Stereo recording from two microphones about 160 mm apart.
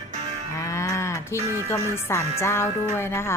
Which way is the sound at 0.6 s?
20° left (ahead or behind).